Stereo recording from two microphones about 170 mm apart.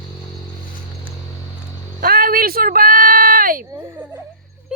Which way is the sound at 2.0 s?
60° right (ahead or behind).